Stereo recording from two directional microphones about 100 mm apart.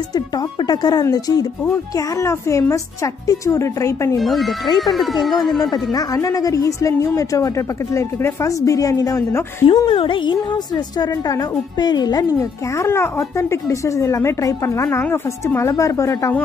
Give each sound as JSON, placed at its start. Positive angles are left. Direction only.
{"t": 0.1, "sound": "a woman's voice", "side_deg": 40}
{"t": 2.0, "sound": "a woman's voice", "side_deg": 30}
{"t": 4.2, "sound": "speech", "side_deg": 0}
{"t": 5.7, "sound": "a woman's voice", "side_deg": 40}
{"t": 9.8, "sound": "a woman's voice", "side_deg": 60}